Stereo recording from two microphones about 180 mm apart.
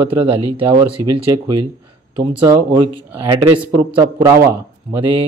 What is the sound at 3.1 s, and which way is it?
A man's voice, 15° right (ahead or behind).